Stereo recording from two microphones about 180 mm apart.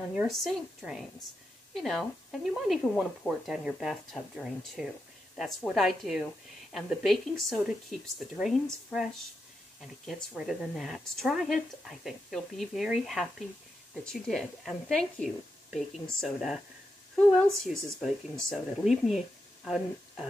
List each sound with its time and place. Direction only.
0.1 s speech: 5° right (ahead or behind)